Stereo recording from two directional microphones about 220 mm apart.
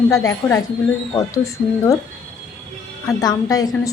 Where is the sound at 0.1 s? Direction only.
15° left (ahead or behind).